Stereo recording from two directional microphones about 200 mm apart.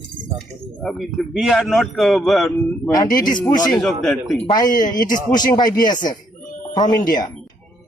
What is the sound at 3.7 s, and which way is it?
Speech, centre (ahead or behind).